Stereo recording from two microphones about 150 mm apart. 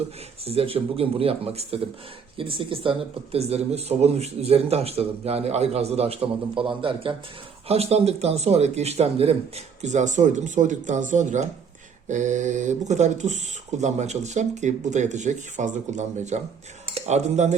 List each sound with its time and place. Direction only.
0.4 s speech: 40° right (ahead or behind)